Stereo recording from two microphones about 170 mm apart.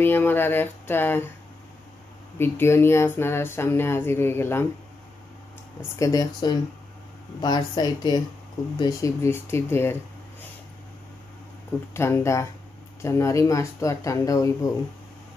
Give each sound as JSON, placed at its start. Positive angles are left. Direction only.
{"t": 0.0, "sound": "speech", "side_deg": 10}
{"t": 2.3, "sound": "speech", "side_deg": 15}
{"t": 5.9, "sound": "speech", "side_deg": 20}
{"t": 11.9, "sound": "speech", "side_deg": 15}